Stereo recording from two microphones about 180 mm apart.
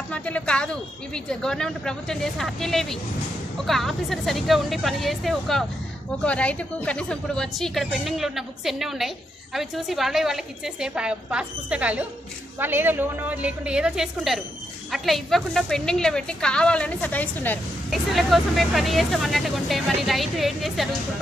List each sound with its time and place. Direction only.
0.1 s a woman's voice: 5° left (ahead or behind)